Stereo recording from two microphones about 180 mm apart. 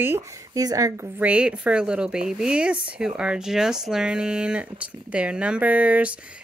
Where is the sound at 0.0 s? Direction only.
15° right (ahead or behind).